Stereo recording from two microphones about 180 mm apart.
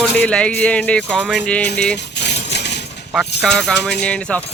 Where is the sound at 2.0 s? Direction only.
70° left (ahead or behind).